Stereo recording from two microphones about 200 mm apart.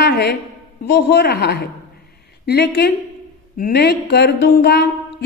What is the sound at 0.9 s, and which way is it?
A woman's voice, 55° left (ahead or behind).